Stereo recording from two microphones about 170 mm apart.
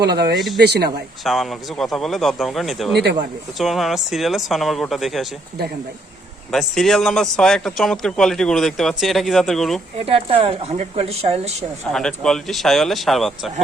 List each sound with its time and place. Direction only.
0.0 s speech: 70° right (ahead or behind)
1.2 s a man's voice: centre (ahead or behind)
2.9 s speech: 75° right (ahead or behind)
3.6 s a man's voice: centre (ahead or behind)
6.5 s a man's voice: centre (ahead or behind)
10.1 s speech: 35° right (ahead or behind)
11.9 s a man's voice: 5° left (ahead or behind)